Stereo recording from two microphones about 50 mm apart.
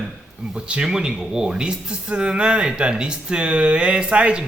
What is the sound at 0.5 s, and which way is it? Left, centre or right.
A man's voice, centre.